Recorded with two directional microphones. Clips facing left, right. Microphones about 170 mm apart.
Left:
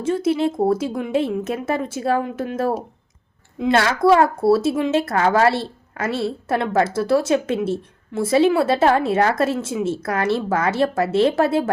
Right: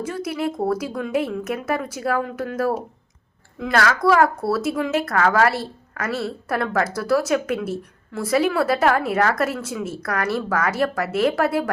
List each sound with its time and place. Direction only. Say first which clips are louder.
0.0 s speech: left 6 dB; 25° left (ahead or behind)